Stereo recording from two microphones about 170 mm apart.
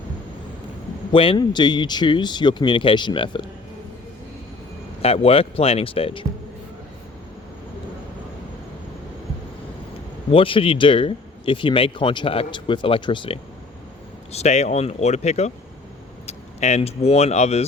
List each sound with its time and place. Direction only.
1.1 s speech: 30° left (ahead or behind)
5.0 s speech: 35° left (ahead or behind)
10.3 s speech: 30° left (ahead or behind)
14.3 s speech: 40° left (ahead or behind)